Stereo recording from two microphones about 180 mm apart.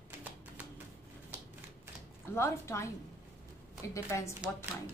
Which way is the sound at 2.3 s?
15° left (ahead or behind).